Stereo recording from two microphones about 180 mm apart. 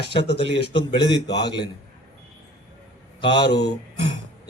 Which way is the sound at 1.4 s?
25° left (ahead or behind).